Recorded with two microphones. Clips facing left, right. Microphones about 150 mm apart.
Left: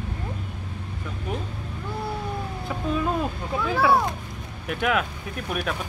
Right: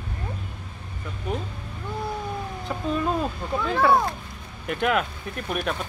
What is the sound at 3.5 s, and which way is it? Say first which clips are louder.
Speech: right 1 dB; 5° left (ahead or behind).